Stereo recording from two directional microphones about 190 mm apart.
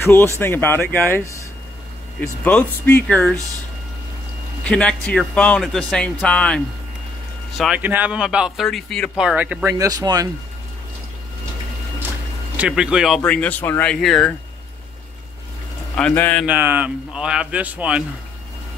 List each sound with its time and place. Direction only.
0.0 s speech: 15° left (ahead or behind)
4.6 s speech: 5° left (ahead or behind); by 10.3 s 20° right (ahead or behind)
12.5 s speech: 5° right (ahead or behind)
16.0 s speech: 5° left (ahead or behind)
16.4 s speech: 10° right (ahead or behind)